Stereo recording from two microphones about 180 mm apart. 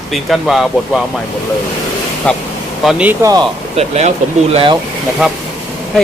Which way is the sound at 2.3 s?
5° left (ahead or behind).